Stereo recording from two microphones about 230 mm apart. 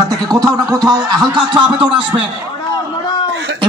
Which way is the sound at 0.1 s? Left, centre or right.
Centre.